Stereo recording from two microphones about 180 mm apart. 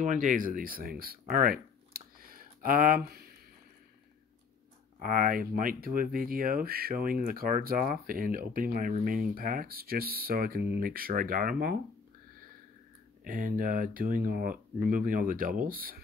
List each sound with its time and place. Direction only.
0.0 s speech: 45° right (ahead or behind)
5.0 s speech: 50° right (ahead or behind)
13.2 s speech: 50° right (ahead or behind)